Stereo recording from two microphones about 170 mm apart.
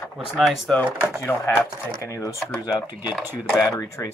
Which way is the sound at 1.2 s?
15° left (ahead or behind).